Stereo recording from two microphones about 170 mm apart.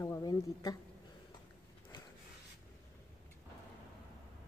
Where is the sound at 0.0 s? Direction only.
20° left (ahead or behind).